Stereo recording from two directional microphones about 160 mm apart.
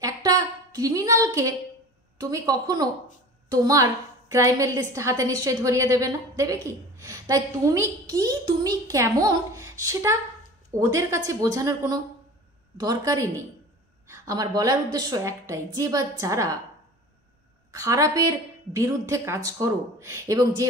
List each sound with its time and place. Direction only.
0.0 s a sound: 20° right (ahead or behind)
2.1 s a woman's voice: 25° right (ahead or behind)
17.6 s a woman's voice: 20° right (ahead or behind)